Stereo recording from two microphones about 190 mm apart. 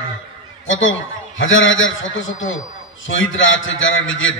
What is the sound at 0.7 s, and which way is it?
A man's voice, 90° left.